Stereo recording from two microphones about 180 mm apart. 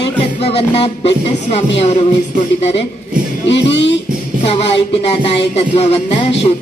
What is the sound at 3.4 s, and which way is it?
Speech, 75° left (ahead or behind).